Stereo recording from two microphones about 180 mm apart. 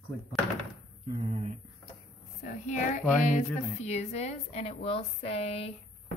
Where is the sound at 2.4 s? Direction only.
45° left (ahead or behind).